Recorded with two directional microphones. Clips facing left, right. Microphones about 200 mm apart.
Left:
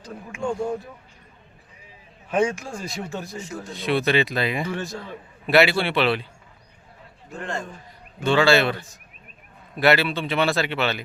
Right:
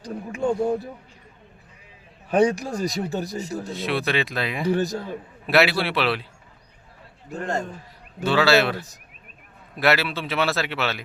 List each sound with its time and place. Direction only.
0.0 s speech: 40° right (ahead or behind)
2.3 s speech: 35° right (ahead or behind)
3.7 s a man's voice: centre (ahead or behind)
4.7 s speech: 40° right (ahead or behind)
5.0 s a man's voice: centre (ahead or behind)
7.3 s speech: 40° right (ahead or behind)
8.2 s a man's voice: 5° right (ahead or behind)
9.8 s a man's voice: centre (ahead or behind)